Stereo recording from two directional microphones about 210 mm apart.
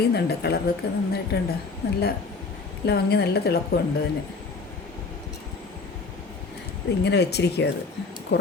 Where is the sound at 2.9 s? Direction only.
50° left (ahead or behind).